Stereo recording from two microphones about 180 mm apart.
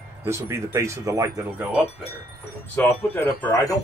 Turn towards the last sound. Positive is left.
turn(degrees=15)  # may be behind; listen again after turning